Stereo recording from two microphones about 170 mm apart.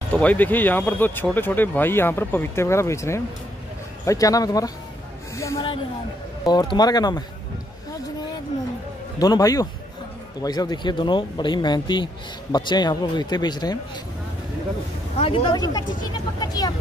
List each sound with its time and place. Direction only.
0.1 s speech: 10° left (ahead or behind)
6.4 s speech: 25° left (ahead or behind)
9.2 s speech: 20° left (ahead or behind)
15.1 s speech: 35° left (ahead or behind)
15.5 s speech: 20° left (ahead or behind)